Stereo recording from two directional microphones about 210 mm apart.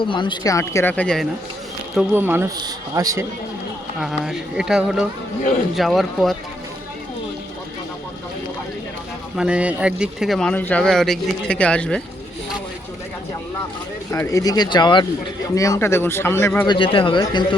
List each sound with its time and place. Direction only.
0.0 s speech: 25° left (ahead or behind); by 1.3 s 5° left (ahead or behind)
2.0 s speech: 10° right (ahead or behind)
4.0 s speech: centre (ahead or behind)
9.3 s speech: 5° right (ahead or behind)
14.1 s speech: 15° left (ahead or behind)
16.6 s speech: 25° left (ahead or behind)